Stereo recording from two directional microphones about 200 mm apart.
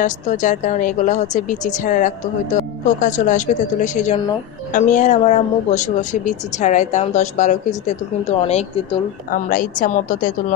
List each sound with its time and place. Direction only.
0.0 s speech: 40° left (ahead or behind)
9.3 s a woman's voice: 45° left (ahead or behind)